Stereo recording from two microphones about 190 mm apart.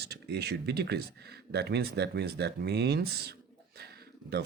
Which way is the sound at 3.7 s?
55° right (ahead or behind).